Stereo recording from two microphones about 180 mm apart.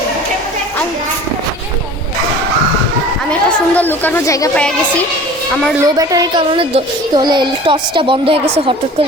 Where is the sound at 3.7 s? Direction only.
10° left (ahead or behind).